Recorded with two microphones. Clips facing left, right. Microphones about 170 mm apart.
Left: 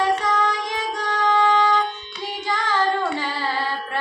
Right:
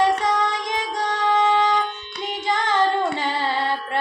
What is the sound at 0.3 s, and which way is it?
Child singing, 20° right (ahead or behind).